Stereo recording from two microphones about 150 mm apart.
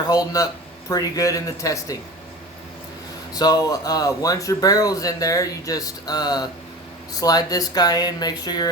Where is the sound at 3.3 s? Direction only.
25° left (ahead or behind).